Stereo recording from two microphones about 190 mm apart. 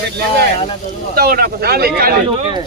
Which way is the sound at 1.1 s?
55° right (ahead or behind).